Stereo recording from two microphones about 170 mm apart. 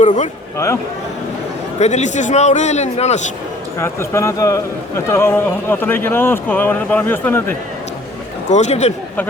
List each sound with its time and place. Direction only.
0.0 s a man's voice: 45° left (ahead or behind)
1.8 s a man's voice: 45° left (ahead or behind)
3.8 s speech: 15° left (ahead or behind)
8.4 s a man's voice: 45° left (ahead or behind)